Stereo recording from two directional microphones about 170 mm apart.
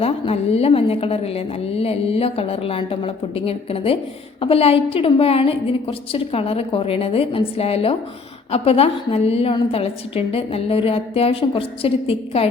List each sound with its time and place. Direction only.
0.0 s a woman's voice: 35° left (ahead or behind)